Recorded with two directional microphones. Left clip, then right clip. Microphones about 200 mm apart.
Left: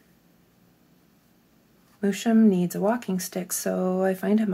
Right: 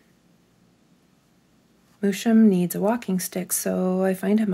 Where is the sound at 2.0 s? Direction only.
35° right (ahead or behind).